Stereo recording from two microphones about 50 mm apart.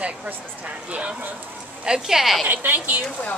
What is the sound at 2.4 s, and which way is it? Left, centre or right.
Speech, right.